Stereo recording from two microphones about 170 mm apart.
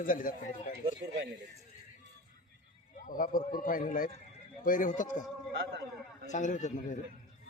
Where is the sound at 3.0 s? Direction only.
55° left (ahead or behind).